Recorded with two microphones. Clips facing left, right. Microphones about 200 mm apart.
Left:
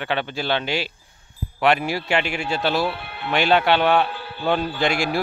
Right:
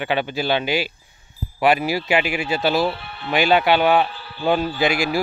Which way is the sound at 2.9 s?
60° left (ahead or behind).